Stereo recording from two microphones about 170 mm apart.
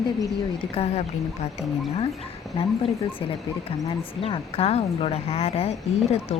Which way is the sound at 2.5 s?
35° left (ahead or behind).